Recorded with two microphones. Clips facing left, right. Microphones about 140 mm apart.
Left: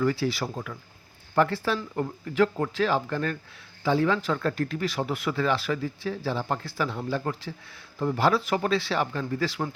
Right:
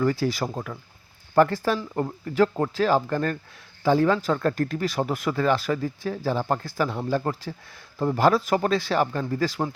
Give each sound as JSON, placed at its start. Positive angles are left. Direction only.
{"t": 0.0, "sound": "speech", "side_deg": -40}